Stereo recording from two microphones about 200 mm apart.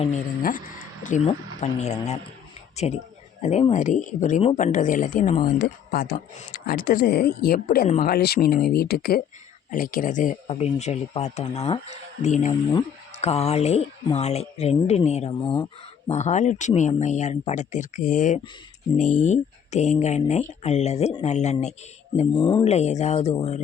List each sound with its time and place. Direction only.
0.0 s speech: 40° left (ahead or behind)
5.6 s speech: 50° left (ahead or behind)
10.4 s speech: 30° left (ahead or behind)
22.4 s speech: 25° left (ahead or behind)